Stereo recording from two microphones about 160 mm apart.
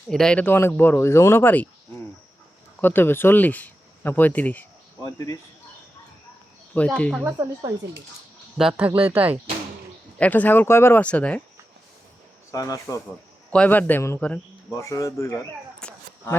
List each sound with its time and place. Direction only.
0.1 s speech: 5° left (ahead or behind)
2.8 s speech: 15° left (ahead or behind)
5.0 s speech: 20° left (ahead or behind)
6.7 s speech: 10° left (ahead or behind)
7.3 s speech: 20° right (ahead or behind)
8.7 s speech: 10° right (ahead or behind)
10.2 s speech: 10° left (ahead or behind)
12.5 s speech: 20° left (ahead or behind)
13.5 s speech: 10° left (ahead or behind)
14.8 s speech: 20° left (ahead or behind)
15.8 s a sound: 10° left (ahead or behind)